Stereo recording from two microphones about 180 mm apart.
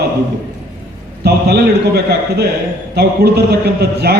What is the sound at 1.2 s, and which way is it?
A man's voice, 60° right (ahead or behind).